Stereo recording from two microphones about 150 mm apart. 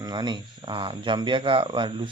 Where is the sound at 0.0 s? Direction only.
30° right (ahead or behind).